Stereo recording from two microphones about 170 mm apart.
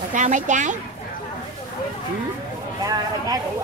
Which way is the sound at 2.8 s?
20° right (ahead or behind).